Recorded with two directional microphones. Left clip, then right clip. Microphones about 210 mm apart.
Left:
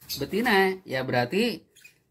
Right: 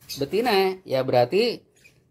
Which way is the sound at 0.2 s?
25° right (ahead or behind).